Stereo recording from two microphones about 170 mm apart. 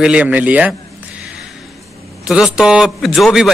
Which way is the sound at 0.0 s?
5° right (ahead or behind).